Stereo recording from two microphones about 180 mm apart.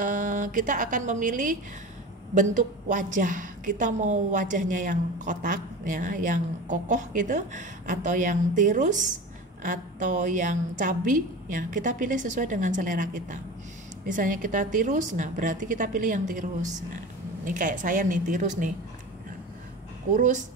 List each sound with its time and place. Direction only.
0.0 s a woman's voice: 45° right (ahead or behind)
20.2 s a woman's voice: 45° right (ahead or behind)